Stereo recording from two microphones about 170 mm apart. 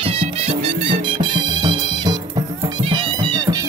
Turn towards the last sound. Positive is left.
turn(degrees=-25)  # may be behind; listen again after turning